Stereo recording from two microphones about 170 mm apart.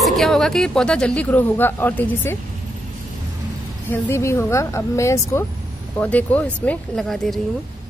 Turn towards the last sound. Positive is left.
turn(degrees=0)  # may be behind; listen again after turning